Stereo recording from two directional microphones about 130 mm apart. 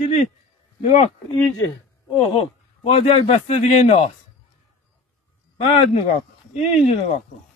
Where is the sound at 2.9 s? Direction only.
55° left (ahead or behind).